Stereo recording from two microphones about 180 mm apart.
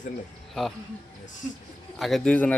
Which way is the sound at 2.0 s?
Centre (ahead or behind).